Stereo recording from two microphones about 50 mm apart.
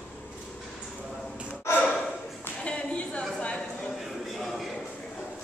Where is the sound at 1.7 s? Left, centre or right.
Left.